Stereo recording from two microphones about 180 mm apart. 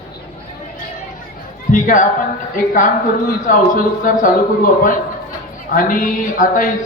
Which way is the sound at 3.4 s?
45° left (ahead or behind).